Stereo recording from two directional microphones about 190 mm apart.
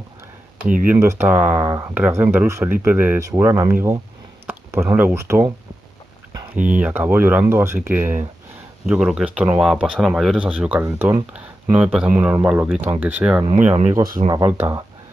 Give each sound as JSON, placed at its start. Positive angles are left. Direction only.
{"t": 0.8, "sound": "speech", "side_deg": -15}
{"t": 6.5, "sound": "speech", "side_deg": -5}
{"t": 13.7, "sound": "speech", "side_deg": -35}
{"t": 14.3, "sound": "speech", "side_deg": -15}